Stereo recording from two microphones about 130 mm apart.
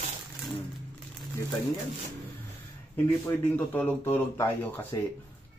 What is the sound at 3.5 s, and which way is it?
Speech, 10° left (ahead or behind).